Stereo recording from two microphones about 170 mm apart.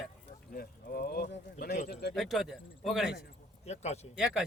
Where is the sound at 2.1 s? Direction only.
Centre (ahead or behind).